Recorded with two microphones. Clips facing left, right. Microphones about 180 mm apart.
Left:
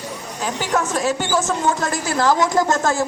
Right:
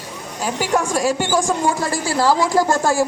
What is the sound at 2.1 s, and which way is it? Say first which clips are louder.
Speech: right 1 dB; 10° right (ahead or behind).